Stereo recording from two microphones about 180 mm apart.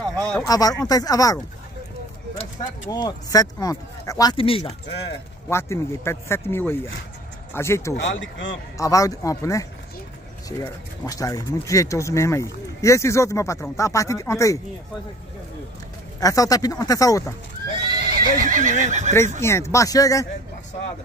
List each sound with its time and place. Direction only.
0.0 s a sound: 20° right (ahead or behind)
0.4 s speech: 20° left (ahead or behind)
2.9 s speech: 20° left (ahead or behind)
5.5 s speech: 15° left (ahead or behind)
8.0 s speech: 90° left
8.7 s speech: 20° left (ahead or behind)
16.2 s speech: 20° left (ahead or behind)
18.1 s speech: 45° right (ahead or behind)
19.4 s speech: 15° left (ahead or behind)